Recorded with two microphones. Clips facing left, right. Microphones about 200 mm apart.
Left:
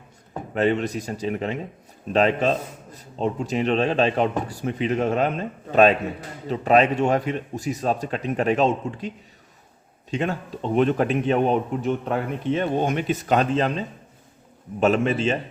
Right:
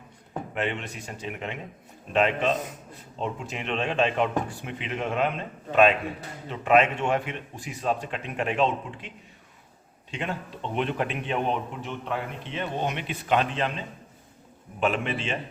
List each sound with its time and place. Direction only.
0.5 s a man's voice: 40° left (ahead or behind)